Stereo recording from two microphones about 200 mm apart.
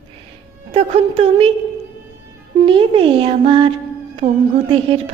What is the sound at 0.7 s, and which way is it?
Speech, 30° right (ahead or behind).